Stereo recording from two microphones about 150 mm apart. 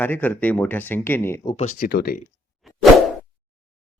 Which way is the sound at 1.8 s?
90° left.